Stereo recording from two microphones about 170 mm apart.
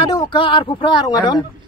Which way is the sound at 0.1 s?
30° left (ahead or behind).